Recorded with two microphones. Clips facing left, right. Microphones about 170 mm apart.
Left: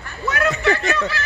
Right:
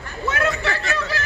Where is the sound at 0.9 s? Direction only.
40° right (ahead or behind).